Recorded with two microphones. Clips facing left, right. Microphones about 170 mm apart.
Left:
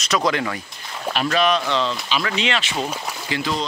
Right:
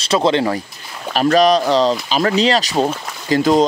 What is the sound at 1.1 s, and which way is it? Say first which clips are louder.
Speech: right 7 dB; 40° right (ahead or behind).